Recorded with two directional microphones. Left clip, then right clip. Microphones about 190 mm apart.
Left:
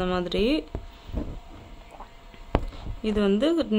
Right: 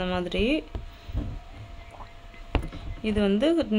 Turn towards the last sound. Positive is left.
turn(degrees=10)  # may be behind; listen again after turning